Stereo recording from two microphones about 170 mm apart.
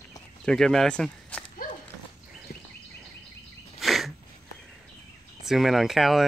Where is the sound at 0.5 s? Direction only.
5° left (ahead or behind).